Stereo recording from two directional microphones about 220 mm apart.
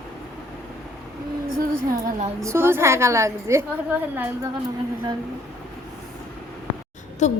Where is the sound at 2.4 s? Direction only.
10° right (ahead or behind).